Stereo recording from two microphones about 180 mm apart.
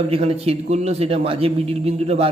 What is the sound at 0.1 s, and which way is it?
A man's voice, 35° right (ahead or behind).